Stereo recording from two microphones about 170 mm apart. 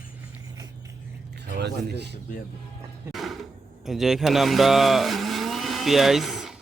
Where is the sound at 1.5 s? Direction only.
80° right.